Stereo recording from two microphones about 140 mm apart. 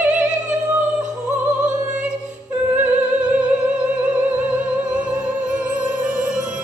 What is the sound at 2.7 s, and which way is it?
Music, 10° right (ahead or behind).